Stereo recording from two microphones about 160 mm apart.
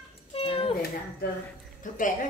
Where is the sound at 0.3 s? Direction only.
35° left (ahead or behind).